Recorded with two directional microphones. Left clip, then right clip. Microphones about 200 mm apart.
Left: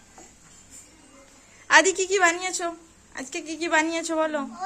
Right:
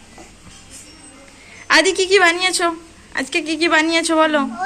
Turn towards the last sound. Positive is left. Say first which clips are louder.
# right 10 dB
turn(degrees=10)  # may be behind; listen again after turning